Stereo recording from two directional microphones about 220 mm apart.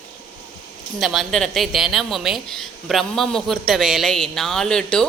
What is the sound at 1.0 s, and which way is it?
A woman's voice, centre (ahead or behind).